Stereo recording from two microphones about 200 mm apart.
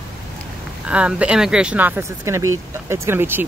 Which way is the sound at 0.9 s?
5° right (ahead or behind).